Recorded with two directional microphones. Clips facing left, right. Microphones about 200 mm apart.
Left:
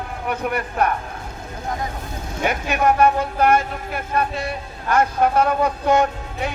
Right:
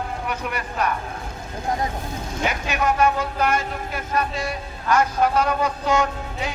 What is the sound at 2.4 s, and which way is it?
Speech, 55° left (ahead or behind).